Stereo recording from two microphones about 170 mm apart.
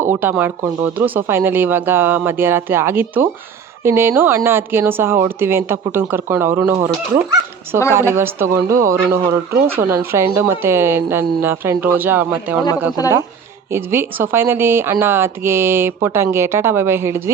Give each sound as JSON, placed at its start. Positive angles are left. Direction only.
{"t": 0.1, "sound": "speech", "side_deg": -10}
{"t": 13.0, "sound": "speech", "side_deg": 25}
{"t": 13.7, "sound": "speech", "side_deg": -15}